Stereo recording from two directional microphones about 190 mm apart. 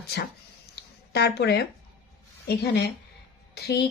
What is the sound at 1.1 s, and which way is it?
Speech, 60° left (ahead or behind).